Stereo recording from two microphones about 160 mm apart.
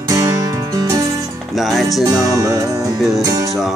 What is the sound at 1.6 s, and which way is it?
Music, centre (ahead or behind).